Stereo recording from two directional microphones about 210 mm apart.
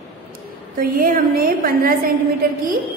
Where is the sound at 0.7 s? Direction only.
40° right (ahead or behind).